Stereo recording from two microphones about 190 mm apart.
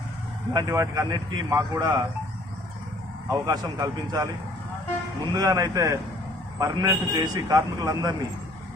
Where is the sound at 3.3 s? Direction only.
20° right (ahead or behind).